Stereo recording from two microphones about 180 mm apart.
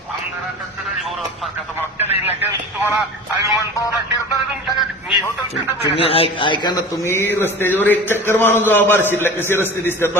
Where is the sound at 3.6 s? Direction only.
20° left (ahead or behind).